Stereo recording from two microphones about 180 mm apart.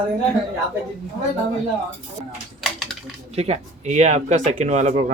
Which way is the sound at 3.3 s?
35° right (ahead or behind).